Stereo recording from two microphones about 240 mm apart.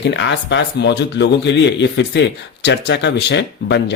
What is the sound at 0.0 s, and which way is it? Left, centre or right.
A man's voice, left.